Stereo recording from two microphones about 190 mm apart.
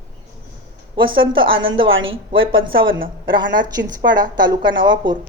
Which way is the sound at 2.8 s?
90° right.